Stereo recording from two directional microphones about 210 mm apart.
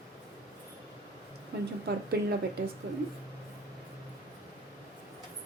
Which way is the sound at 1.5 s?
50° right (ahead or behind).